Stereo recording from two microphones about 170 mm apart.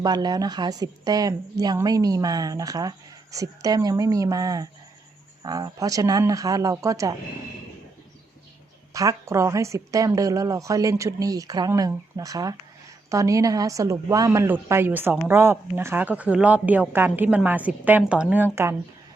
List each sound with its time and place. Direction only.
0.0 s a woman's voice: 25° right (ahead or behind)
8.9 s a woman's voice: 20° right (ahead or behind)